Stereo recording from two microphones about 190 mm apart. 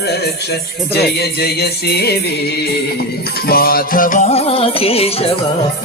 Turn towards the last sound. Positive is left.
turn(degrees=30)  # may be behind; listen again after turning